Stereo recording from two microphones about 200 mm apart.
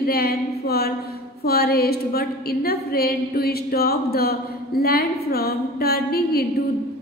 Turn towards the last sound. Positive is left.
turn(degrees=50)  # may be behind; listen again after turning